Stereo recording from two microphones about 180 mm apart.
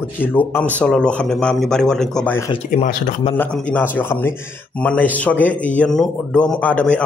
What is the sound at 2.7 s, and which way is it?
Speech, 45° left (ahead or behind).